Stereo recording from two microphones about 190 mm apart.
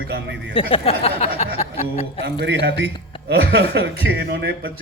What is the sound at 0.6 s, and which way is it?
Speech, 30° left (ahead or behind).